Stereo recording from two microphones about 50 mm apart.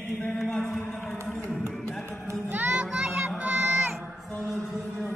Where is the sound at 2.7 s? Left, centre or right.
Centre.